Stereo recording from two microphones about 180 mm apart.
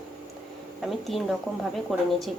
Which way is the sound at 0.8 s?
Centre (ahead or behind).